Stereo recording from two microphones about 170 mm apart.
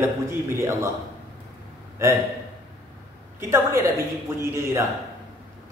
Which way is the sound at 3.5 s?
15° right (ahead or behind).